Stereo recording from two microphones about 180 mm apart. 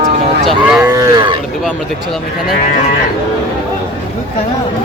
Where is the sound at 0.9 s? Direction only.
20° right (ahead or behind).